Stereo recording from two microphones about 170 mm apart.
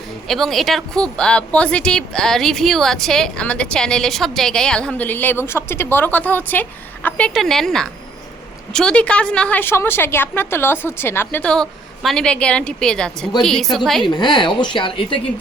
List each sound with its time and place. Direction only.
0.3 s a woman's voice: centre (ahead or behind)
14.0 s a woman's voice: 25° left (ahead or behind)